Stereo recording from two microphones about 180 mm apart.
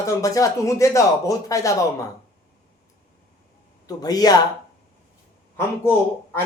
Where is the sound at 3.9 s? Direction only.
20° left (ahead or behind).